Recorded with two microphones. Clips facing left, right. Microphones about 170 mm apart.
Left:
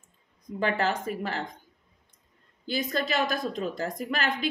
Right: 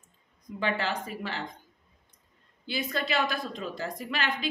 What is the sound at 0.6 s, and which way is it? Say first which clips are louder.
Speech: left 3 dB; 45° left (ahead or behind).